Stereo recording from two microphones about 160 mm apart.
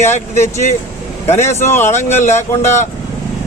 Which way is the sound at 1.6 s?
15° left (ahead or behind).